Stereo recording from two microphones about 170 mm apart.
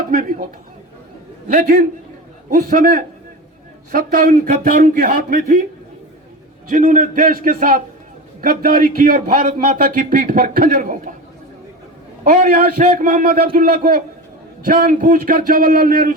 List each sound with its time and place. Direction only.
0.1 s a man's voice: 55° right (ahead or behind)
1.5 s a man's voice: 55° right (ahead or behind)
6.7 s a man's voice: 50° right (ahead or behind)
12.2 s a man's voice: 55° right (ahead or behind)